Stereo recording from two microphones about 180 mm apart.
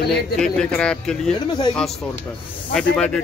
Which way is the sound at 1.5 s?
25° left (ahead or behind).